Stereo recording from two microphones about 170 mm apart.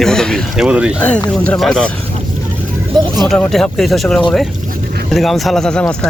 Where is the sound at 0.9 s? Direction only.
10° left (ahead or behind).